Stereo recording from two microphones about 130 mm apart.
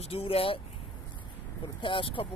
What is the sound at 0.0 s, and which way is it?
Speech, 50° left (ahead or behind).